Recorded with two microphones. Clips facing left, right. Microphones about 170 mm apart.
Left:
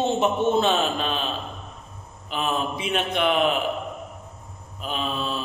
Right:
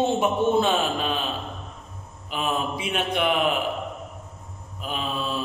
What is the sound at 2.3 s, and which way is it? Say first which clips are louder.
A man's voice: left 1 dB; 5° right (ahead or behind).